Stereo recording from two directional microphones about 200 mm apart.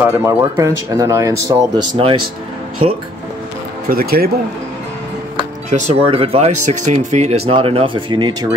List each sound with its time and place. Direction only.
0.0 s speech: 10° right (ahead or behind)
3.9 s speech: 50° right (ahead or behind)
5.7 s speech: 35° right (ahead or behind); by 8.5 s 20° right (ahead or behind)